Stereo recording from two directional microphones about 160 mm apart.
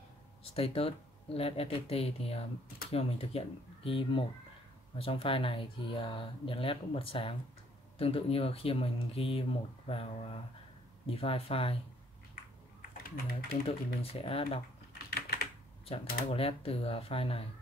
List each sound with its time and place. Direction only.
0.4 s speech: 35° left (ahead or behind)
12.9 s speech: 65° left (ahead or behind)
14.2 s speech: 35° left (ahead or behind)
15.0 s typing: 75° left (ahead or behind)
16.3 s speech: 35° left (ahead or behind)